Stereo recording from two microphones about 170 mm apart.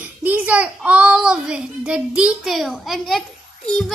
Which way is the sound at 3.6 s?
Centre (ahead or behind).